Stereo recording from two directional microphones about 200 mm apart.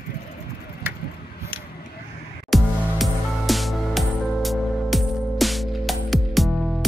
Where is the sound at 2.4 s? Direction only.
Centre (ahead or behind).